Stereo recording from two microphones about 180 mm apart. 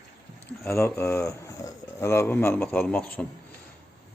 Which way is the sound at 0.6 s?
15° left (ahead or behind).